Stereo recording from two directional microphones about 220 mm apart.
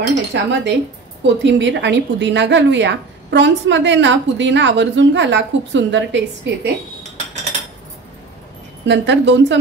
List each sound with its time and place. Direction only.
0.1 s a woman's voice: 55° right (ahead or behind)
8.8 s a woman's voice: 55° right (ahead or behind)